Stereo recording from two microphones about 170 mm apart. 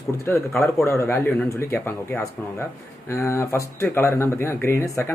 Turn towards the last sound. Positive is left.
turn(degrees=15)  # may be behind; listen again after turning